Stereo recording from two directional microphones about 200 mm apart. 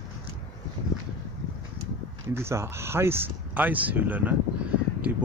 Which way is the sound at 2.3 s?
15° right (ahead or behind).